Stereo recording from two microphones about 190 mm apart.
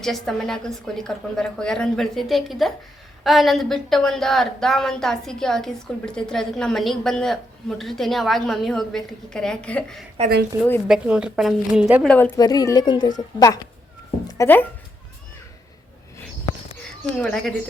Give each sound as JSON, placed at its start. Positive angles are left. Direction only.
{"t": 0.0, "sound": "a woman's voice", "side_deg": 0}
{"t": 12.0, "sound": "speech", "side_deg": 10}
{"t": 12.4, "sound": "a woman's voice", "side_deg": 20}
{"t": 17.2, "sound": "a woman's voice", "side_deg": 5}